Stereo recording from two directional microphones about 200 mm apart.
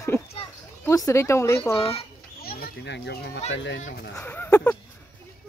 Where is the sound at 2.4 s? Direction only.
50° left (ahead or behind).